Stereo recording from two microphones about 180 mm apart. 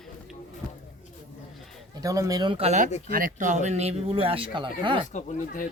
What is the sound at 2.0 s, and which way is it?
Speech, 20° right (ahead or behind).